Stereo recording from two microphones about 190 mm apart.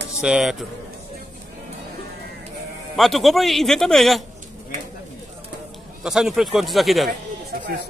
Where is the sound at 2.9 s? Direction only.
Centre (ahead or behind).